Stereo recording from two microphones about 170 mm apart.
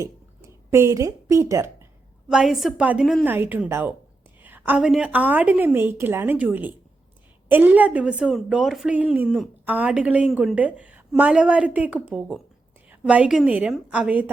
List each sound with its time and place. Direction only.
0.7 s a woman's voice: 15° right (ahead or behind)
2.3 s a woman's voice: 5° right (ahead or behind)